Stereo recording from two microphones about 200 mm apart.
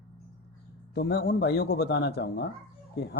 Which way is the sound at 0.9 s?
55° left (ahead or behind).